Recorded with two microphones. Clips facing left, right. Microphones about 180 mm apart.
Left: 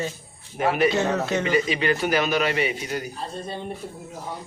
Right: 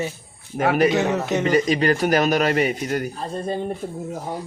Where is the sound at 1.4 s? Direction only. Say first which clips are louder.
Right 7 dB; 45° right (ahead or behind).